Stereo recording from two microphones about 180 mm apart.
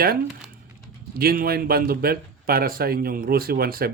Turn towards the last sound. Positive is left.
turn(degrees=-55)  # may be behind; listen again after turning